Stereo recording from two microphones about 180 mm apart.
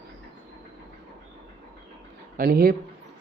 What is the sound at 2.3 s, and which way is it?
Speech, 55° right (ahead or behind).